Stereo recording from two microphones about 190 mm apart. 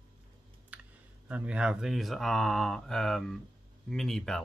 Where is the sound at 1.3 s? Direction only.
5° right (ahead or behind).